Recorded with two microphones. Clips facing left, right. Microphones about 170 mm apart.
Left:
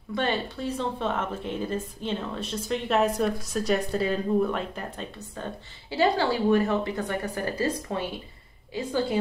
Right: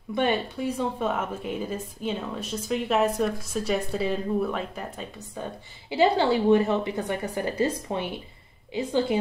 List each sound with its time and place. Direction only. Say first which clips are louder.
0.1 s a woman's voice: right 3 dB; 15° right (ahead or behind)